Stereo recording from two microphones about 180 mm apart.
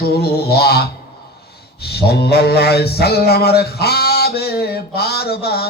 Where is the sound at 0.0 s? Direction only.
60° left (ahead or behind).